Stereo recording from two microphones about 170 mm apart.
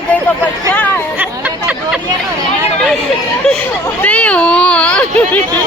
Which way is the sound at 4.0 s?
10° left (ahead or behind).